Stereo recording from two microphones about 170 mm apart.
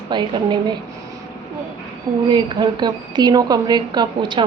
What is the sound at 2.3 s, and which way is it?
Speech, 25° right (ahead or behind).